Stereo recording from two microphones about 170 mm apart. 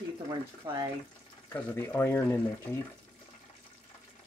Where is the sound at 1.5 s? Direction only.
15° left (ahead or behind).